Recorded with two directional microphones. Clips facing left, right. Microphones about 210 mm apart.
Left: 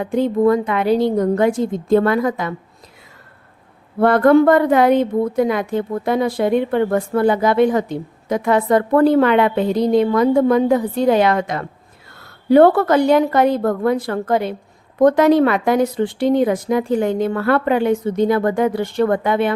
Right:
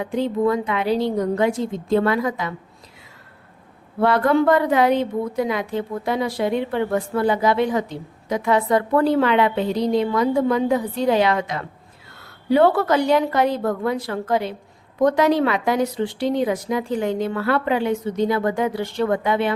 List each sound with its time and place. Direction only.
0.0 s a woman's voice: 50° left (ahead or behind)
4.0 s a woman's voice: 50° left (ahead or behind)